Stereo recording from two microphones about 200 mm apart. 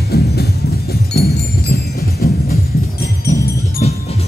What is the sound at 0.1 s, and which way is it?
Music, 55° left (ahead or behind).